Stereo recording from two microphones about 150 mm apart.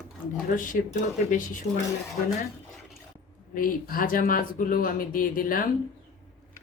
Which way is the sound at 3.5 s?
70° left (ahead or behind).